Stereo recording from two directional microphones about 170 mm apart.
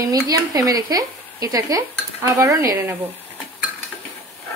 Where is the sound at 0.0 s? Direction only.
20° right (ahead or behind).